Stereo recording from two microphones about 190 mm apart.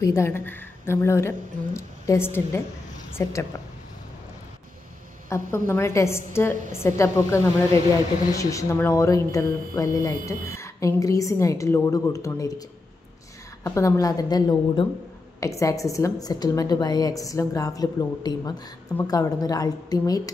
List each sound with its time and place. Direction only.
0.0 s a woman's voice: 15° left (ahead or behind)
5.3 s a woman's voice: 15° left (ahead or behind)
8.4 s a woman's voice: 15° left (ahead or behind)
13.7 s a woman's voice: 15° left (ahead or behind)